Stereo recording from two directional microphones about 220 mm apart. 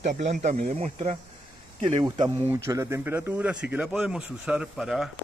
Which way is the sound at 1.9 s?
20° right (ahead or behind).